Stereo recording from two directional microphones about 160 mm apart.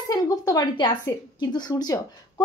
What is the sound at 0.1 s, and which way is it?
A woman's voice, 25° left (ahead or behind).